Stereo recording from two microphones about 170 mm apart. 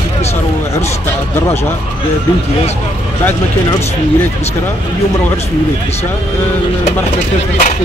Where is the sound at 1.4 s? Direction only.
15° left (ahead or behind).